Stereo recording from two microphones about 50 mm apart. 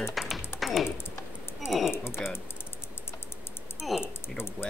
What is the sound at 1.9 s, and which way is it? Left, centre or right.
Speech, left.